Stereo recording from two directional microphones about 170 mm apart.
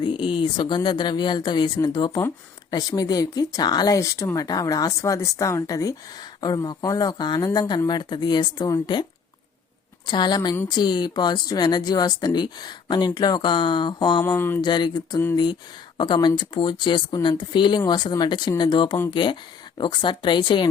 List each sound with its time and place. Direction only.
0.0 s speech: 30° left (ahead or behind)
10.1 s speech: 25° left (ahead or behind)
14.3 s a sound: 10° left (ahead or behind)
14.6 s speech: 25° left (ahead or behind)